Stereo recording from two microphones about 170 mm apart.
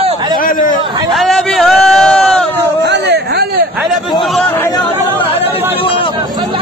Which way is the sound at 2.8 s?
85° right.